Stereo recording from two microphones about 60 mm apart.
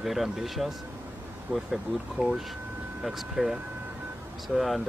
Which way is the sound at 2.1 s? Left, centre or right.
Centre.